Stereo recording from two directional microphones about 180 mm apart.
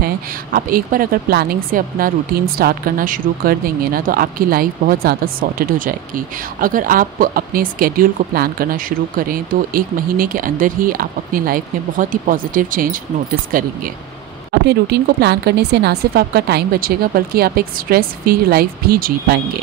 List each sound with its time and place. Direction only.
0.0 s a woman's voice: 55° right (ahead or behind)
14.7 s speech: 65° right (ahead or behind)